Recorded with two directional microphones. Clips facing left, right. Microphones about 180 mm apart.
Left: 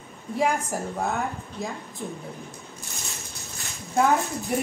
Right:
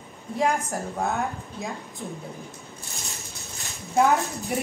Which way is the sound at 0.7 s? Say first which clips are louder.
Even; centre (ahead or behind).